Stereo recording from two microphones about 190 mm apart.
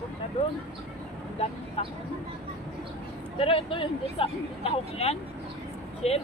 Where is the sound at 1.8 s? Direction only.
30° left (ahead or behind).